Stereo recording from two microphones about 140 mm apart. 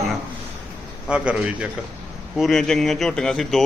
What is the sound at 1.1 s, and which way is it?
Speech, 10° right (ahead or behind).